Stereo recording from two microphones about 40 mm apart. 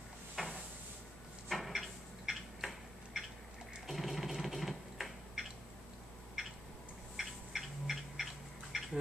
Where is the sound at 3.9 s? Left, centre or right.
Centre.